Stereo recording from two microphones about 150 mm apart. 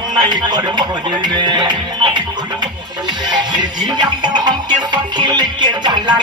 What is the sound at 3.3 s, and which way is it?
Music, 30° right (ahead or behind).